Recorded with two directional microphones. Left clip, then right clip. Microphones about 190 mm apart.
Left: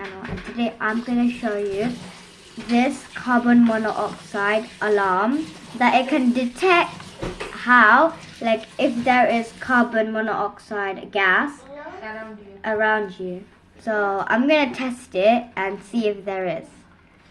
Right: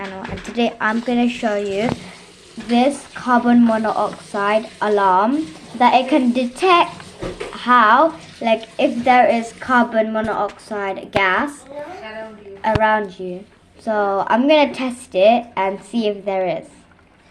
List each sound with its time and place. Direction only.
0.2 s speech: 15° right (ahead or behind)
12.6 s speech: 15° right (ahead or behind)